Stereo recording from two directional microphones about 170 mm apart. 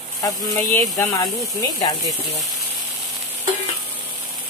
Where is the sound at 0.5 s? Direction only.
20° left (ahead or behind).